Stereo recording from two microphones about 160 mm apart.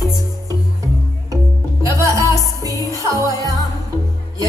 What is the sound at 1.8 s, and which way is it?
Music, 20° right (ahead or behind).